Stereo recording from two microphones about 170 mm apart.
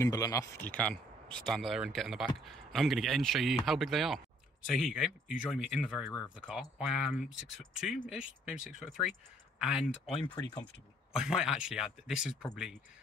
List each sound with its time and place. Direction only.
0.0 s speech: 20° left (ahead or behind)
0.7 s speech: 5° left (ahead or behind)